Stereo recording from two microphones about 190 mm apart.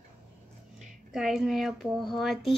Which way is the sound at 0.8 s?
Centre (ahead or behind).